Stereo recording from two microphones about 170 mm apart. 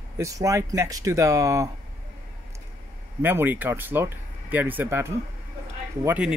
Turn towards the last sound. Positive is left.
turn(degrees=-10)  # may be behind; listen again after turning